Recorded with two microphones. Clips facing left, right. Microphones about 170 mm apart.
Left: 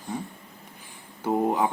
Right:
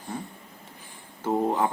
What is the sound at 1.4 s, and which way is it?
Speech, 15° left (ahead or behind).